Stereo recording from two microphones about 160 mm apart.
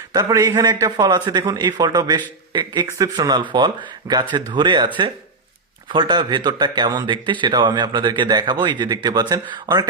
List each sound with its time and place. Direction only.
0.1 s a man's voice: 25° right (ahead or behind)
5.9 s a man's voice: 30° right (ahead or behind)